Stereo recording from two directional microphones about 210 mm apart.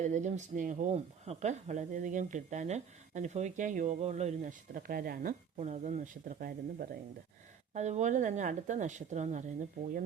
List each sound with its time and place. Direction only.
0.0 s speech: 35° right (ahead or behind)